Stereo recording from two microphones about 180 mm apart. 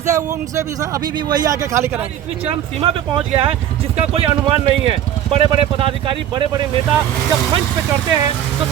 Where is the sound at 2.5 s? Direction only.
30° right (ahead or behind).